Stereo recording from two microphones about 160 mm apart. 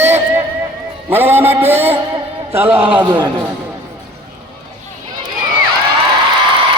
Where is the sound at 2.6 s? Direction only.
15° right (ahead or behind).